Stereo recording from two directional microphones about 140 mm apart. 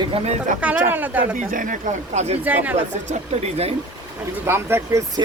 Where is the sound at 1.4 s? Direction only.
70° right (ahead or behind); by 2.4 s 55° right (ahead or behind).